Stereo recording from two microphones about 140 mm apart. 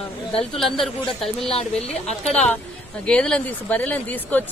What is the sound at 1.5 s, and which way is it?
Speech, 45° left (ahead or behind).